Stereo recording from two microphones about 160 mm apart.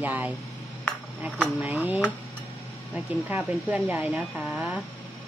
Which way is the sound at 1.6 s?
10° right (ahead or behind).